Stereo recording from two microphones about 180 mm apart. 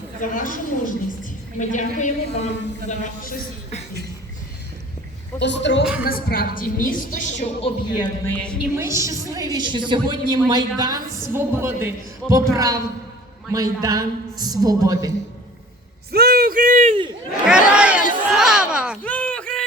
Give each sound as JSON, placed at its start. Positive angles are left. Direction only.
{"t": 0.2, "sound": "a woman's voice", "side_deg": 50}
{"t": 5.4, "sound": "a woman's voice", "side_deg": 75}
{"t": 6.0, "sound": "a woman's voice", "side_deg": 55}
{"t": 8.2, "sound": "a woman's voice", "side_deg": 10}
{"t": 8.7, "sound": "a woman's voice", "side_deg": -15}
{"t": 16.1, "sound": "speech", "side_deg": -60}
{"t": 17.4, "sound": "chatter", "side_deg": -5}
{"t": 18.3, "sound": "a sound", "side_deg": -5}
{"t": 19.0, "sound": "a sound", "side_deg": 10}